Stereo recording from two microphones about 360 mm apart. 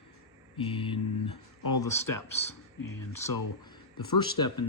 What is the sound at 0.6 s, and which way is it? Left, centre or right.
Speech, centre.